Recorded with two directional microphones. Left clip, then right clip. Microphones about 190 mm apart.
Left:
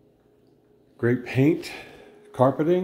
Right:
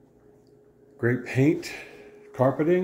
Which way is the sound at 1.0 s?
20° left (ahead or behind).